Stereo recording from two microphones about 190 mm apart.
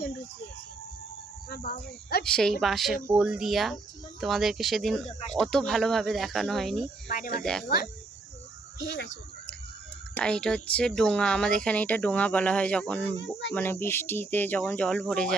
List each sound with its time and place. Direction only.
1.5 s speech: 50° left (ahead or behind)
2.2 s speech: 5° left (ahead or behind)
7.1 s speech: 45° left (ahead or behind)
8.8 s speech: 65° left (ahead or behind)
10.2 s speech: 5° left (ahead or behind)